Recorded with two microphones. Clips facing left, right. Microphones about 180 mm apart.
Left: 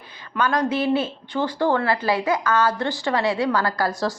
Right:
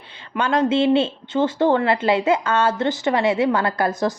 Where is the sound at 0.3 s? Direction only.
25° right (ahead or behind).